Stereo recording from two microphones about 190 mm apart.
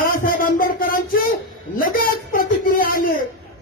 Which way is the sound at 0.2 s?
50° left (ahead or behind).